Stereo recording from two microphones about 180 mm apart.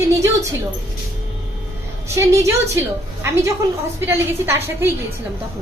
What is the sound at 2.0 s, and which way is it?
Speech, 15° right (ahead or behind).